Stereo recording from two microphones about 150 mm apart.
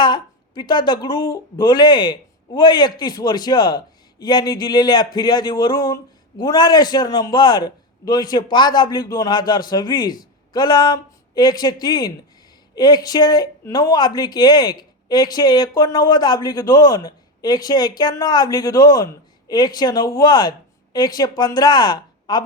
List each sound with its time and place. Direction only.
0.0 s speech: 30° left (ahead or behind)